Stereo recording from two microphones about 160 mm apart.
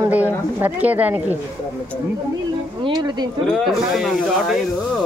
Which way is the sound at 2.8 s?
25° right (ahead or behind).